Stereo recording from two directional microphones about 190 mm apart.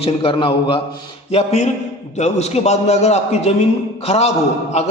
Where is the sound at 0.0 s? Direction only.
30° left (ahead or behind).